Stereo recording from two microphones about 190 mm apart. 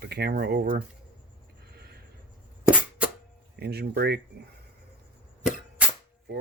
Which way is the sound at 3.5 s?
60° right (ahead or behind).